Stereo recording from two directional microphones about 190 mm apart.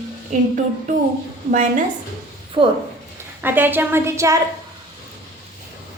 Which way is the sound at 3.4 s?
10° right (ahead or behind).